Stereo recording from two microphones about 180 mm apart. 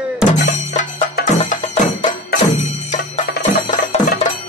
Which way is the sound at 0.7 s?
40° left (ahead or behind).